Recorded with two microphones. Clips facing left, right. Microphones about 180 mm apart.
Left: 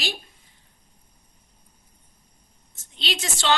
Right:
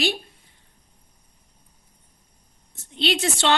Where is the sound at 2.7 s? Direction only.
55° right (ahead or behind).